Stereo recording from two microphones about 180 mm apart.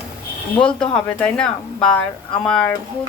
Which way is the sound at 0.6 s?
5° left (ahead or behind).